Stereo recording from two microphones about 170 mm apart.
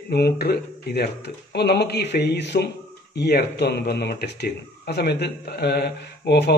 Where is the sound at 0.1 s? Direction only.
70° left (ahead or behind); by 2.7 s 90° left.